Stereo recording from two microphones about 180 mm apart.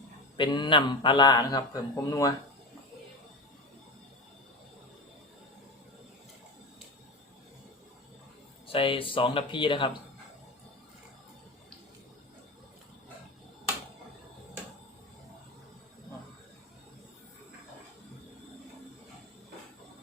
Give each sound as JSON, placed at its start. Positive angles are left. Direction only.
{"t": 0.3, "sound": "a man's voice", "side_deg": 25}
{"t": 8.6, "sound": "a man's voice", "side_deg": 30}